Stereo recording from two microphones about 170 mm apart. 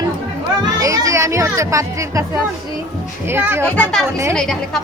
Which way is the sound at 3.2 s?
15° right (ahead or behind).